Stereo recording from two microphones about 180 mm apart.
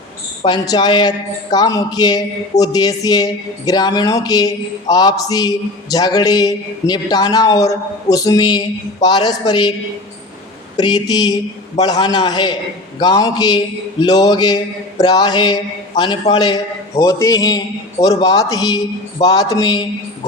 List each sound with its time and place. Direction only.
0.4 s a man's voice: 25° left (ahead or behind)
10.8 s a man's voice: 25° left (ahead or behind)